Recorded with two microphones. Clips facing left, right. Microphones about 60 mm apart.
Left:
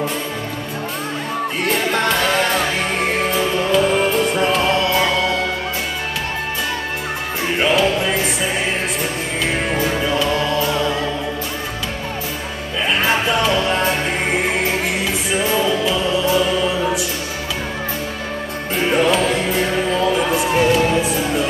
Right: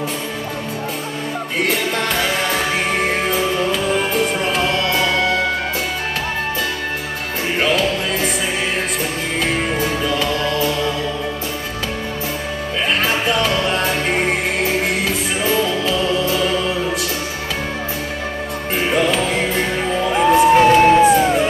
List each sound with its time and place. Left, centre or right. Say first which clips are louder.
1.6 s music: even; left
4.4 s music: left 2 dB; left
7.6 s music: left 3 dB; left
10.2 s music: even; left
13.0 s music: left 3 dB; left
15.8 s music: even; left
20.2 s a sound: right 6 dB; right